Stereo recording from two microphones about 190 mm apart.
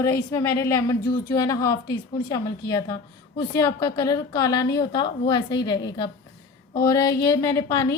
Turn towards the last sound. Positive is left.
turn(degrees=20)  # may be behind; listen again after turning